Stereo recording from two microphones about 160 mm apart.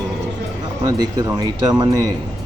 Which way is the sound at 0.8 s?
25° right (ahead or behind).